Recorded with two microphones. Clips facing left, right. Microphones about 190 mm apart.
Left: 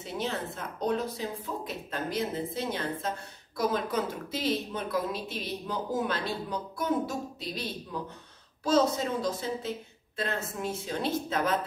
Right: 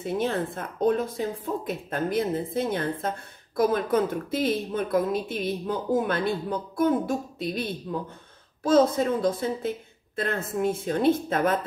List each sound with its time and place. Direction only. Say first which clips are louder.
0.0 s speech: right 7 dB; 55° right (ahead or behind)